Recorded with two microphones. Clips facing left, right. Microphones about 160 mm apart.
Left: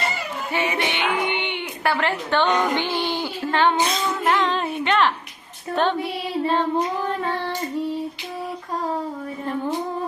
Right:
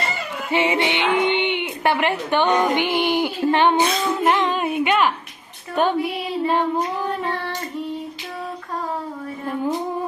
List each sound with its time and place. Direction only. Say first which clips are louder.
0.5 s speech: right 5 dB; 20° right (ahead or behind)